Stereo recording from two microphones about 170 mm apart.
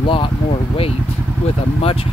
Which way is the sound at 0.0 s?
30° left (ahead or behind).